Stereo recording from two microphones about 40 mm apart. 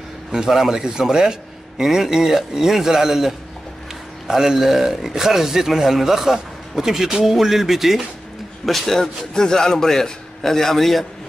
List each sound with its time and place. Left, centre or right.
0.3 s speech: centre
8.6 s a man's voice: centre